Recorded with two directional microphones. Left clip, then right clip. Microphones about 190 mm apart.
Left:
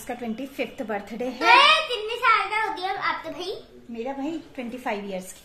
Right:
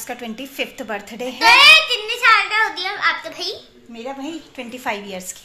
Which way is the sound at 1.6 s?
25° left (ahead or behind).